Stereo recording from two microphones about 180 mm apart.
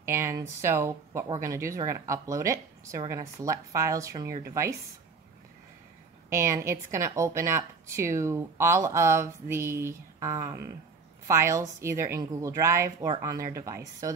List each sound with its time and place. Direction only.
0.0 s speech: 15° right (ahead or behind)
6.3 s speech: 15° right (ahead or behind)